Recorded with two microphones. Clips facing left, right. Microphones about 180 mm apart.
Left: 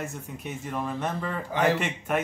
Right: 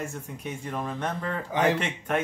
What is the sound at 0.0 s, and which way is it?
Speech, 5° left (ahead or behind).